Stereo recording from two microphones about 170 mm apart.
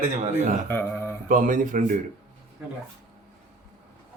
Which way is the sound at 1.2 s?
50° right (ahead or behind).